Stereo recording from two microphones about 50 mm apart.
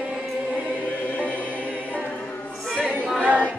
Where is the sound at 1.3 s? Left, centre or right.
Left.